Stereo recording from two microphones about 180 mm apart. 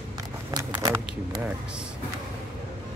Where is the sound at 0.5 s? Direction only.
20° right (ahead or behind).